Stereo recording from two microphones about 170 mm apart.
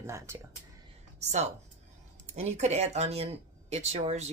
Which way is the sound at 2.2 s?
40° right (ahead or behind).